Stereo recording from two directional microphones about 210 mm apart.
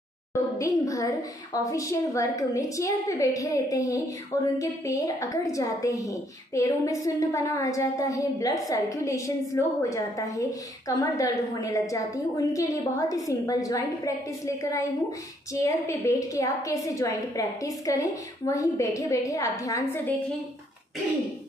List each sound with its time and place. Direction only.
0.6 s a woman's voice: 15° left (ahead or behind)